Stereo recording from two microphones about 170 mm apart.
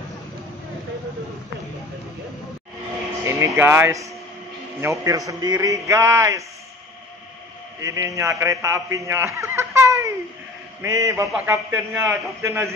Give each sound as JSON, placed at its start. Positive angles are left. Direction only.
{"t": 3.3, "sound": "speech", "side_deg": -15}
{"t": 7.8, "sound": "a man's voice", "side_deg": -20}
{"t": 11.3, "sound": "speech", "side_deg": -10}